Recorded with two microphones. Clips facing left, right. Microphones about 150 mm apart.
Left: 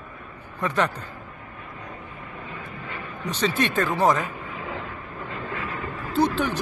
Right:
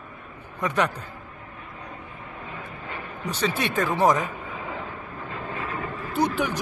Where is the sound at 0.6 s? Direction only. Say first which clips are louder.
Even; 10° right (ahead or behind).